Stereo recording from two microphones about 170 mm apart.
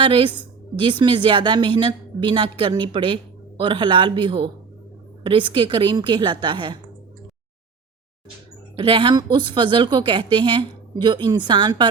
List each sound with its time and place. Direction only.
0.0 s a woman's voice: 30° right (ahead or behind)
8.7 s a woman's voice: 30° right (ahead or behind)